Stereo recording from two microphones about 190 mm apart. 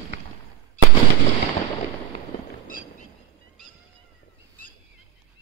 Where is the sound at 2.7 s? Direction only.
50° left (ahead or behind).